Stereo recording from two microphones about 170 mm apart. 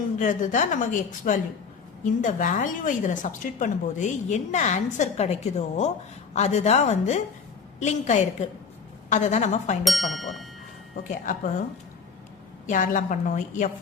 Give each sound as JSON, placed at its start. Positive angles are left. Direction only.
{"t": 0.2, "sound": "a woman's voice", "side_deg": 45}
{"t": 9.8, "sound": "speech", "side_deg": 0}
{"t": 10.9, "sound": "a woman's voice", "side_deg": 50}
{"t": 12.6, "sound": "a woman's voice", "side_deg": 50}